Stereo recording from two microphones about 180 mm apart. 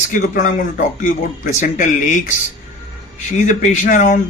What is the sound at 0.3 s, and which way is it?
A man's voice, 45° left (ahead or behind).